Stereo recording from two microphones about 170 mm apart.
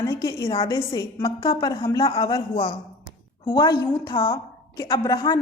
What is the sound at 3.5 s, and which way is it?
A woman's voice, 25° left (ahead or behind).